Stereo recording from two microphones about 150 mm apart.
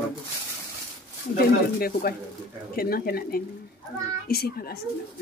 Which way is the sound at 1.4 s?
90° left.